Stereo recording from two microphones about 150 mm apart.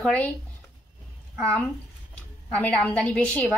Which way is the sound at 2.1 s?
10° left (ahead or behind).